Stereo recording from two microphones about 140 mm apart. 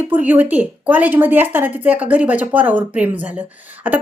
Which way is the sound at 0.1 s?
10° right (ahead or behind).